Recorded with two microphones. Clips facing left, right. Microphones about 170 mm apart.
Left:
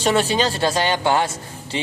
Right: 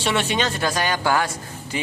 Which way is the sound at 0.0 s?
40° left (ahead or behind).